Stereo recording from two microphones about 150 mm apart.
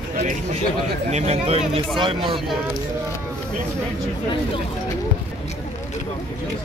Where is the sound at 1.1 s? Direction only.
45° right (ahead or behind).